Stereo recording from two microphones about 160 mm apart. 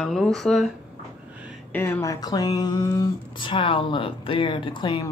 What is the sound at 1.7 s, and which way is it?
Speech, 15° left (ahead or behind).